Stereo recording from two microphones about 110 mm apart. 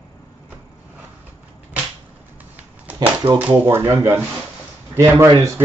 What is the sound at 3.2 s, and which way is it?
Speech, 55° right (ahead or behind).